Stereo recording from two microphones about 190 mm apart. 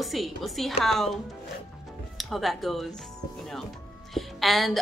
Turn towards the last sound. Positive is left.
turn(degrees=0)  # may be behind; listen again after turning